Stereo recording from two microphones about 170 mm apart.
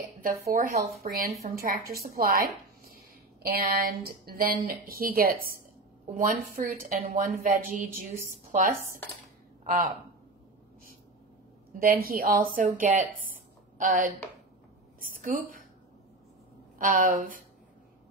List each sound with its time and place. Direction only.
0.2 s speech: 55° right (ahead or behind)
1.0 s a woman's voice: 45° right (ahead or behind)
11.8 s a woman's voice: 60° right (ahead or behind)
16.7 s speech: 55° right (ahead or behind)